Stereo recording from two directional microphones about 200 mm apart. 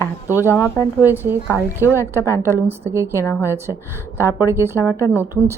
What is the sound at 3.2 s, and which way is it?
Speech, 10° left (ahead or behind).